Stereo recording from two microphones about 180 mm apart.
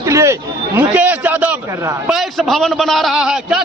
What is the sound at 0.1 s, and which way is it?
Chatter, 15° right (ahead or behind).